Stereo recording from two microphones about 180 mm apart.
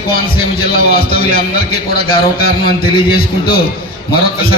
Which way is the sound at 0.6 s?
55° left (ahead or behind).